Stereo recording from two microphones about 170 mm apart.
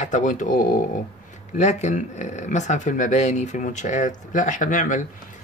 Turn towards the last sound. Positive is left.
turn(degrees=50)  # may be behind; listen again after turning